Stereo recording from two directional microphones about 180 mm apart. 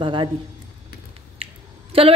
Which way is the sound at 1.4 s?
30° right (ahead or behind).